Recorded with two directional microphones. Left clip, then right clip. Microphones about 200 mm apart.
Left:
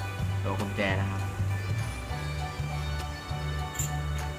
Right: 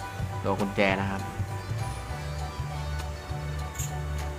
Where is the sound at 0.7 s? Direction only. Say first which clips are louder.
Right 5 dB; 55° right (ahead or behind).